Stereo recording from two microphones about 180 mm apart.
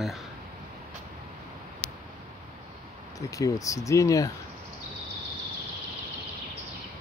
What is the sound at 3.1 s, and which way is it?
Speech, 20° left (ahead or behind).